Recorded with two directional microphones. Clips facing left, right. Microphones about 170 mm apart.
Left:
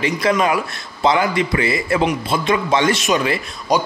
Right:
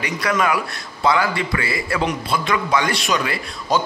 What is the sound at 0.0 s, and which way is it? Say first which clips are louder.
A man's voice: left 4 dB; 25° left (ahead or behind).